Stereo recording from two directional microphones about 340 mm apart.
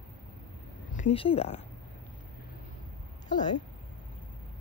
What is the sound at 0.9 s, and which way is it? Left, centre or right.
Speech, centre.